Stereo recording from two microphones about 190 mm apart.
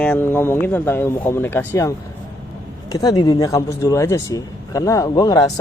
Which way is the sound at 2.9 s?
20° left (ahead or behind).